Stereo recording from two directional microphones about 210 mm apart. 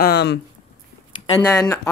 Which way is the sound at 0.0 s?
50° left (ahead or behind).